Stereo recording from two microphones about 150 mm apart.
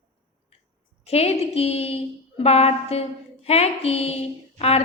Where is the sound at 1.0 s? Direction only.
45° left (ahead or behind).